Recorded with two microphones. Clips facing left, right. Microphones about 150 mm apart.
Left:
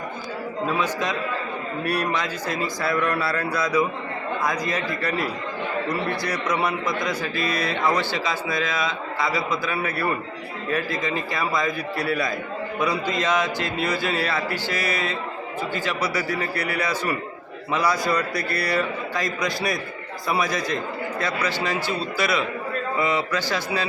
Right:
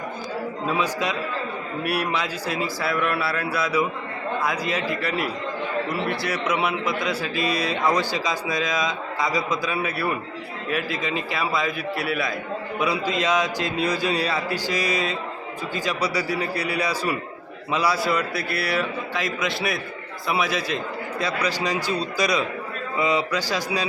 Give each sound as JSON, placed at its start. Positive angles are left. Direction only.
{"t": 1.8, "sound": "a man's voice", "side_deg": -10}
{"t": 9.2, "sound": "a man's voice", "side_deg": -15}
{"t": 21.4, "sound": "a man's voice", "side_deg": -15}